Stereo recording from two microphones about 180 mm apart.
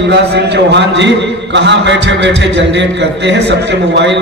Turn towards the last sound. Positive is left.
turn(degrees=-75)  # may be behind; listen again after turning